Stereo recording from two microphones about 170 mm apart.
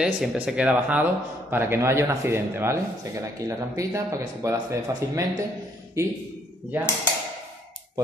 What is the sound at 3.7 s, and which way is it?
Speech, 15° right (ahead or behind).